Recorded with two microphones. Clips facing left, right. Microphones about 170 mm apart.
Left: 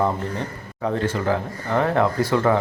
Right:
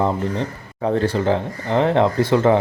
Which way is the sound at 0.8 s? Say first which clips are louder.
Right 4 dB; 35° right (ahead or behind).